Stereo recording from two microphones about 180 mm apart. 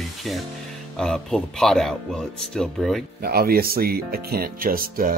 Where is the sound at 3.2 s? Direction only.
55° right (ahead or behind).